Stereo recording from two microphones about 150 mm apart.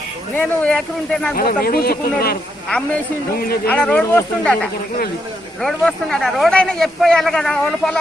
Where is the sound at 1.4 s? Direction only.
75° left (ahead or behind).